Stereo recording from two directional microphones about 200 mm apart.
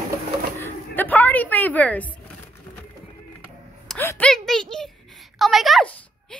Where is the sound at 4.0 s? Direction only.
10° left (ahead or behind).